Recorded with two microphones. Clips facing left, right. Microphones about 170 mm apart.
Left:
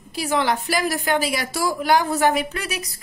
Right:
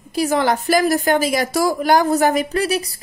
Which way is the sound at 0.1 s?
45° right (ahead or behind).